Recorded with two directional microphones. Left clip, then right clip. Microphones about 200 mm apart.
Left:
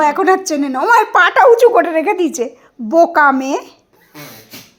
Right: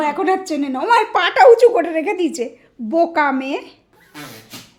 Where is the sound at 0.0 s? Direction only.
15° left (ahead or behind).